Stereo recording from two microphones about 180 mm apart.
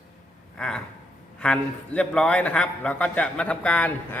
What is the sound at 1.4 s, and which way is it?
A man's voice, 5° left (ahead or behind).